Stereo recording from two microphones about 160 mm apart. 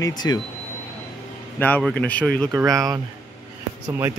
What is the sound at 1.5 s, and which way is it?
Speech, 10° left (ahead or behind).